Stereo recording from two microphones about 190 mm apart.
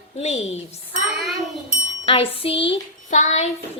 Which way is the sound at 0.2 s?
35° left (ahead or behind).